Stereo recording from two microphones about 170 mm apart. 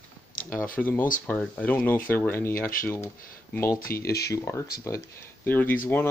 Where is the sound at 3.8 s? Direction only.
60° left (ahead or behind).